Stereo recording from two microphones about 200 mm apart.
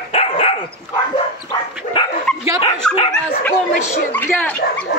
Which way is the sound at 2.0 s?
25° left (ahead or behind).